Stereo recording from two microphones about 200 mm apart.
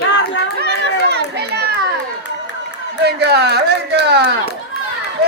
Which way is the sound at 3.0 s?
55° right (ahead or behind).